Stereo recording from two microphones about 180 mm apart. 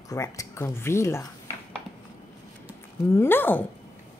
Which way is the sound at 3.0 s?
15° left (ahead or behind).